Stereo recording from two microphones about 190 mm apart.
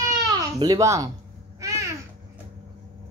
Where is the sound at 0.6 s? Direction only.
20° right (ahead or behind).